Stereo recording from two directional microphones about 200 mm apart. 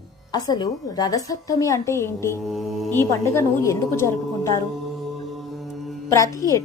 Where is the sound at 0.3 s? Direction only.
20° left (ahead or behind).